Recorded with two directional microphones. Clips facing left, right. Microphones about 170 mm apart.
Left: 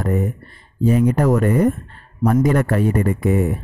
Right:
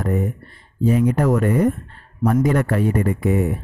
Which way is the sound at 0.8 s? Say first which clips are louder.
Left 1 dB; 40° left (ahead or behind).